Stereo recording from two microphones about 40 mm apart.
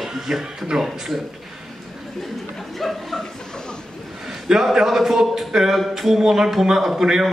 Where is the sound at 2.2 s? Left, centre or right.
Centre.